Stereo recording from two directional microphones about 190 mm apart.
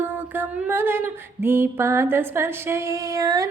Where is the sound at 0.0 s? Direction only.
10° right (ahead or behind).